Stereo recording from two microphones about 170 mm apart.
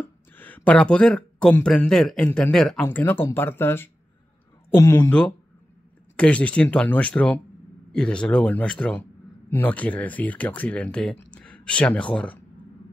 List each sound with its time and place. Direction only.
0.0 s speech: 10° left (ahead or behind)